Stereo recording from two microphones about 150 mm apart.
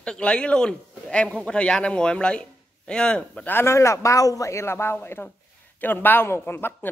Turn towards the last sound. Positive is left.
turn(degrees=15)  # may be behind; listen again after turning